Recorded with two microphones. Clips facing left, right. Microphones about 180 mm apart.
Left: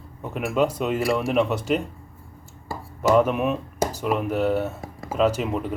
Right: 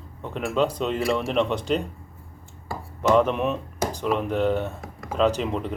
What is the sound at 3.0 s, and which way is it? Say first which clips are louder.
Speech: left 1 dB; 5° left (ahead or behind).